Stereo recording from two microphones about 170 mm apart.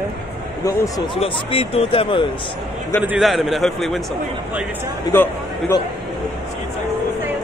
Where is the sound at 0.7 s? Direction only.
20° left (ahead or behind).